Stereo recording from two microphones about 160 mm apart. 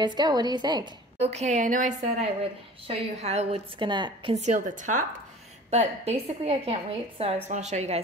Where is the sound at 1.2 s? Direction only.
45° right (ahead or behind).